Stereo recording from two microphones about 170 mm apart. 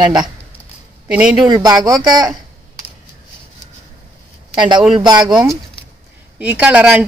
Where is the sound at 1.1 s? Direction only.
5° right (ahead or behind).